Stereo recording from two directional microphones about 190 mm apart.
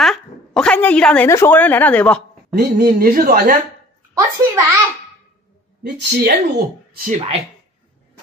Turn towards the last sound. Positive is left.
turn(degrees=-40)  # may be behind; listen again after turning